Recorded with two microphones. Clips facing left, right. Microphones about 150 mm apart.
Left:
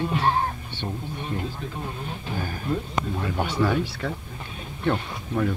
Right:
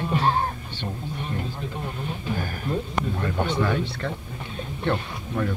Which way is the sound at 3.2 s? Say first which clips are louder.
Even; 10° left (ahead or behind).